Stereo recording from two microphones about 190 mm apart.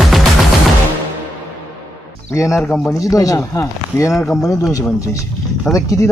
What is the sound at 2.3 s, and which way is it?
Speech, 15° left (ahead or behind).